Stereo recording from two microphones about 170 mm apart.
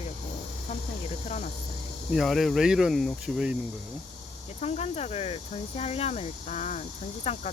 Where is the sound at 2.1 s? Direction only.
Centre (ahead or behind).